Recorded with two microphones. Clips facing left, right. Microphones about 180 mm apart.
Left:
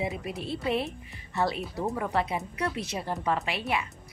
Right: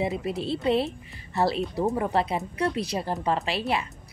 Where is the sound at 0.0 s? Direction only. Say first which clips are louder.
Right 5 dB; 30° right (ahead or behind).